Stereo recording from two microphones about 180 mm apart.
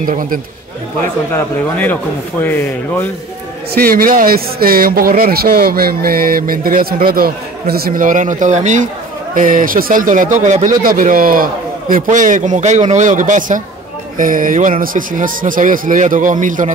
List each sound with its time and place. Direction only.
0.0 s speech: 50° right (ahead or behind)
1.3 s speech: 10° left (ahead or behind)
3.7 s speech: 55° right (ahead or behind)